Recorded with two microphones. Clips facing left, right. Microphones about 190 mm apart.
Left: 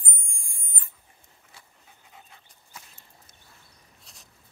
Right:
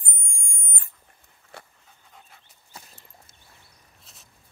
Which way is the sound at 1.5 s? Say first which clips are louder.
Right 11 dB; 65° right (ahead or behind).